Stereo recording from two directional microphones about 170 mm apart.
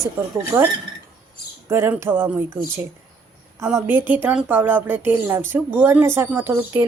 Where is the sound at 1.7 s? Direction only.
15° right (ahead or behind).